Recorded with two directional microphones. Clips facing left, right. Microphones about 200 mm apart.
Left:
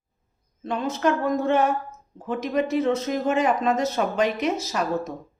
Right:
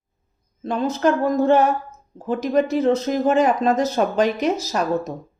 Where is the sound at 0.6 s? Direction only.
35° right (ahead or behind).